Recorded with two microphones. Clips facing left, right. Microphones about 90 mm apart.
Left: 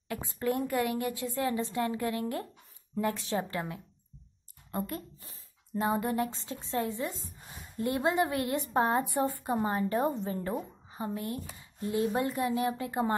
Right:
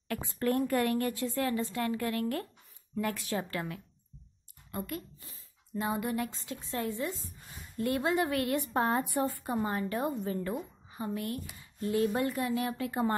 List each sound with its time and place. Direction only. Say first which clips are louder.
0.1 s speech: right 1 dB; 20° left (ahead or behind)
4.6 s speech: left 2 dB; 35° left (ahead or behind)